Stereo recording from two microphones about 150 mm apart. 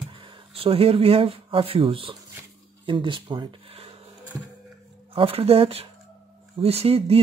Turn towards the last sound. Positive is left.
turn(degrees=-40)  # may be behind; listen again after turning